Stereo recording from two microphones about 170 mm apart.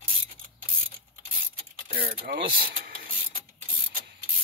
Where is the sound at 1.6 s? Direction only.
60° right (ahead or behind).